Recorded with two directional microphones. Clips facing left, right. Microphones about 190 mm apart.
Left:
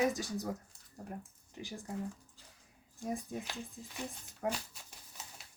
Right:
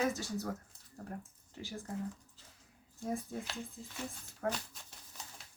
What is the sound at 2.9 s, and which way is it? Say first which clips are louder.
Speech: even; 15° left (ahead or behind).